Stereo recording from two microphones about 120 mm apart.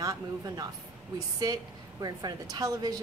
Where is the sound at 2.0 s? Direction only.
30° right (ahead or behind).